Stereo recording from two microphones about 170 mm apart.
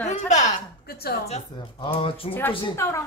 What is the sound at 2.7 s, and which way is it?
Speech, 15° left (ahead or behind).